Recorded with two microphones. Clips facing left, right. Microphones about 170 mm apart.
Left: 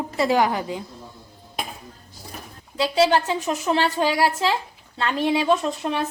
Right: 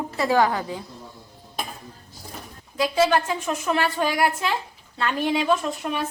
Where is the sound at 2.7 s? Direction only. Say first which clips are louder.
Left 1 dB; 25° left (ahead or behind).